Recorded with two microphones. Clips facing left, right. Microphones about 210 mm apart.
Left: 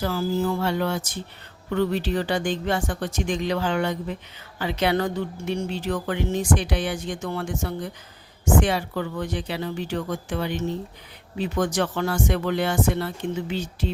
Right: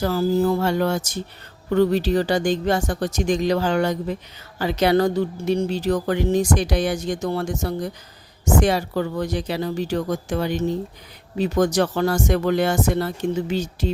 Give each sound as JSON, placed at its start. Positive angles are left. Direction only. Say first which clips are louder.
{"t": 0.0, "sound": "music", "louder": "right 5 dB", "side_deg": -40}
{"t": 1.7, "sound": "speech", "louder": "right 5 dB", "side_deg": -40}